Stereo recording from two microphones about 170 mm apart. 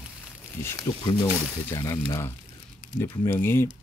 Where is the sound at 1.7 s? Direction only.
20° left (ahead or behind).